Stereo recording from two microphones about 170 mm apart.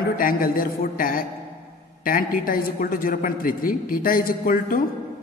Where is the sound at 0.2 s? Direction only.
55° left (ahead or behind).